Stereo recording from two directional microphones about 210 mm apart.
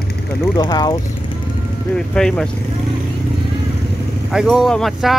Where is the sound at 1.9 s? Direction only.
5° left (ahead or behind).